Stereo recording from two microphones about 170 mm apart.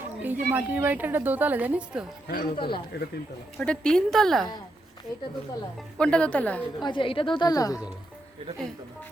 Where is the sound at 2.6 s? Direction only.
30° left (ahead or behind).